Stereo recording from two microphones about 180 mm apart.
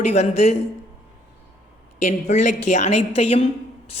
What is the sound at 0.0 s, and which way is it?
Speech, 35° left (ahead or behind).